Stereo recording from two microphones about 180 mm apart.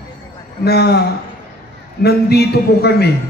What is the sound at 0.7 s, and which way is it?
Speech, 65° left (ahead or behind).